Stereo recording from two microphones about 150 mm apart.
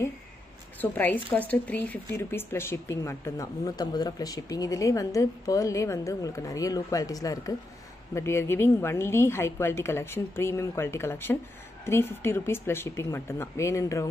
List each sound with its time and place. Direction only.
0.7 s a woman's voice: 10° left (ahead or behind)